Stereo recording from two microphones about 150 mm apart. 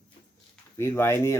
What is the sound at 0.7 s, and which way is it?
Speech, 15° left (ahead or behind).